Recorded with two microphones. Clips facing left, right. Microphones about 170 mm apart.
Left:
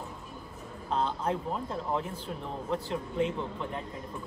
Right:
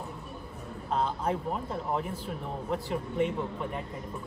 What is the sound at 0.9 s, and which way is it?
Speech, 5° right (ahead or behind).